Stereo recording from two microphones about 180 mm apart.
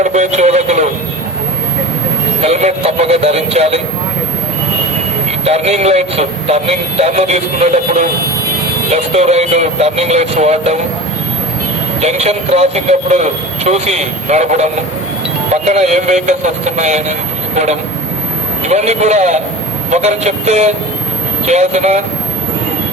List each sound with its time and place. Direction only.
0.0 s speech: 40° right (ahead or behind)
2.4 s speech: 35° right (ahead or behind)
5.5 s speech: 35° right (ahead or behind)
12.0 s speech: 35° right (ahead or behind)
18.7 s speech: 40° right (ahead or behind)